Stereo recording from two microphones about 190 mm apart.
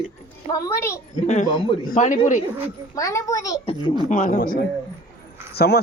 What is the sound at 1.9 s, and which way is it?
Speech, 40° left (ahead or behind).